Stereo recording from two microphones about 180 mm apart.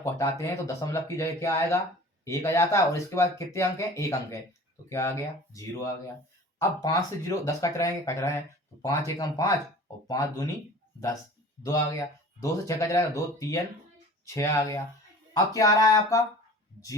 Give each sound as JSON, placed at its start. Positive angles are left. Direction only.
{"t": 0.0, "sound": "speech", "side_deg": 15}
{"t": 11.6, "sound": "speech", "side_deg": 20}